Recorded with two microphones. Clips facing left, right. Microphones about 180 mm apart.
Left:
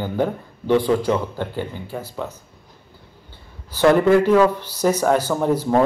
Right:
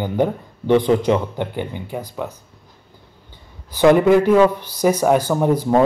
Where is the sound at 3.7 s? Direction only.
15° right (ahead or behind).